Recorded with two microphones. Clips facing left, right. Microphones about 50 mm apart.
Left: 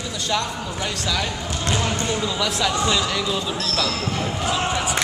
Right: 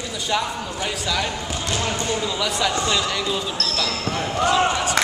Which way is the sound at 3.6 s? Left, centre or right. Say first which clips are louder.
Left 1 dB; centre.